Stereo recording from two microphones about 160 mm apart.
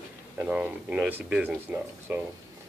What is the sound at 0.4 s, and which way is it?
Speech, 5° right (ahead or behind).